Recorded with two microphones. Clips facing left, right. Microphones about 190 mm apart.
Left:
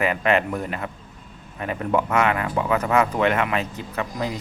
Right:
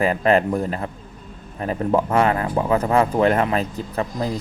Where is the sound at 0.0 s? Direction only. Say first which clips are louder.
Right 3 dB; 35° right (ahead or behind).